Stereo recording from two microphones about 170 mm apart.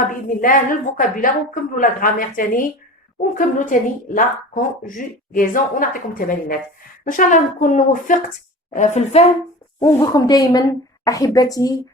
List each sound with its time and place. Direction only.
0.0 s a woman's voice: 50° left (ahead or behind)
9.8 s a woman's voice: 20° left (ahead or behind)